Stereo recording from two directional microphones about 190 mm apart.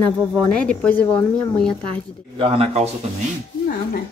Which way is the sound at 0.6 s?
5° left (ahead or behind).